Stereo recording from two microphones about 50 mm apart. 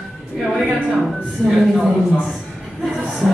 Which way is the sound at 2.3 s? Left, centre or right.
Centre.